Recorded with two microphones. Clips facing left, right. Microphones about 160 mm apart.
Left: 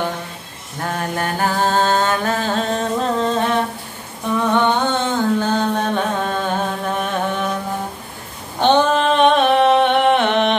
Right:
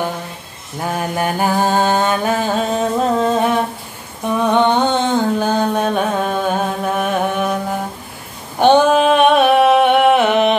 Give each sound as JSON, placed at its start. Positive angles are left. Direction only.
{"t": 0.7, "sound": "mantra", "side_deg": -10}
{"t": 4.4, "sound": "humming", "side_deg": -15}
{"t": 5.4, "sound": "music", "side_deg": -10}
{"t": 8.5, "sound": "a sound", "side_deg": -10}